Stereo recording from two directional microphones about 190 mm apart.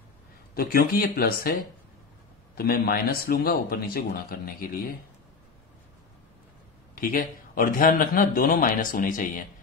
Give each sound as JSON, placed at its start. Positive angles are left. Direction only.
{"t": 0.6, "sound": "a man's voice", "side_deg": 50}
{"t": 7.0, "sound": "a man's voice", "side_deg": 45}